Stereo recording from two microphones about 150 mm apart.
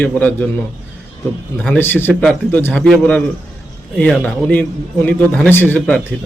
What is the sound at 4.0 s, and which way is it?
A man's voice, 5° left (ahead or behind).